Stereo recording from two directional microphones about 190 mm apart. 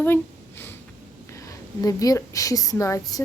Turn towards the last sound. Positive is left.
turn(degrees=15)  # may be behind; listen again after turning